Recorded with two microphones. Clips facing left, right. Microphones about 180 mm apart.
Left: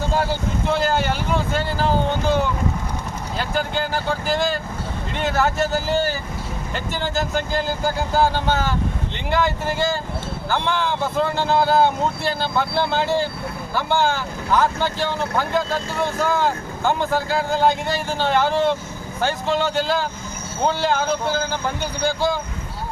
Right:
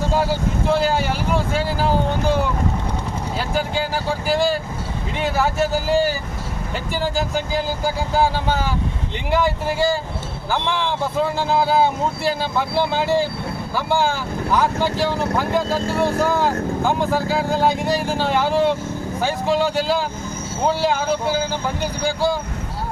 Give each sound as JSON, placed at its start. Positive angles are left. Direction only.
{"t": 0.1, "sound": "vehicle", "side_deg": -5}
{"t": 3.3, "sound": "speech", "side_deg": -5}
{"t": 15.9, "sound": "speech", "side_deg": -35}
{"t": 16.2, "sound": "speech", "side_deg": -5}